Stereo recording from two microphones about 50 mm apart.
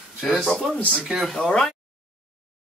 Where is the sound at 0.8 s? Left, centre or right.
Left.